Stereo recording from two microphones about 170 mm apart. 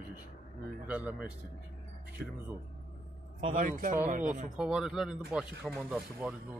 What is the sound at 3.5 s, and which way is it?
Speech, 50° right (ahead or behind).